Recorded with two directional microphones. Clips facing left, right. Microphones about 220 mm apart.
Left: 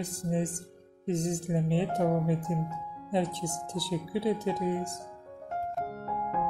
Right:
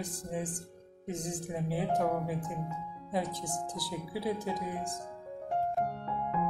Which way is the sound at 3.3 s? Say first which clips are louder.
Left 3 dB; 65° left (ahead or behind).